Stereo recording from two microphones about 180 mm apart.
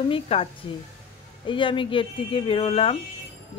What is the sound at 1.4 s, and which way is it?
Speech, 25° left (ahead or behind).